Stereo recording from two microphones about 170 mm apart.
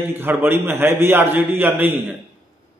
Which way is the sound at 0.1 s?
10° right (ahead or behind).